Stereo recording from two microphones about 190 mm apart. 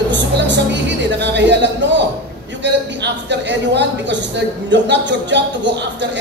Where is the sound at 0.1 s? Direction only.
70° right (ahead or behind).